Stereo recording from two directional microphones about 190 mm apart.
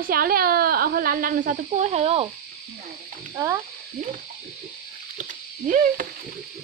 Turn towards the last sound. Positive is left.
turn(degrees=-45)  # may be behind; listen again after turning